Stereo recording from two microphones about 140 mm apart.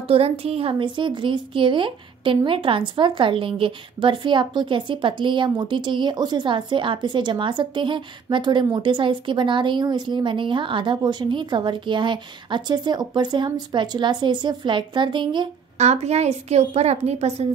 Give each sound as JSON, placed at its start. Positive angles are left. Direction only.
{"t": 0.1, "sound": "speech", "side_deg": -45}
{"t": 15.8, "sound": "a woman's voice", "side_deg": -50}